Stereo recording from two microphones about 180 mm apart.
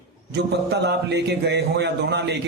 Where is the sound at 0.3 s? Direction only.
70° right (ahead or behind).